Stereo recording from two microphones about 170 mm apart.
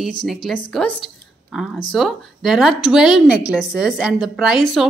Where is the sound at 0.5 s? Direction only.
5° left (ahead or behind).